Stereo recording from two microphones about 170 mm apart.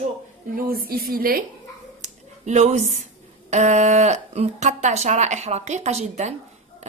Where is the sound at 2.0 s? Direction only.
40° right (ahead or behind).